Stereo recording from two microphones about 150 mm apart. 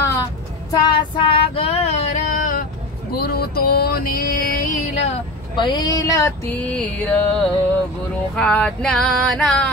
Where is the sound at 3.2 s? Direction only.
90° left.